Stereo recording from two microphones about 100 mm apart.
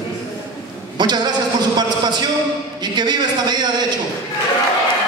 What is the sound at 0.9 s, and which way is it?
A man's voice, 45° right (ahead or behind).